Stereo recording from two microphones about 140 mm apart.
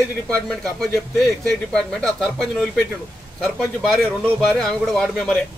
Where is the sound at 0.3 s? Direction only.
5° left (ahead or behind).